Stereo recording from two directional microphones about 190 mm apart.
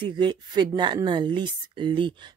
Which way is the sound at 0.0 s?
25° right (ahead or behind).